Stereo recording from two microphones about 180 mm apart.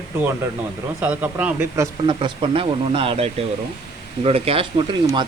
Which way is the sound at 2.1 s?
30° right (ahead or behind).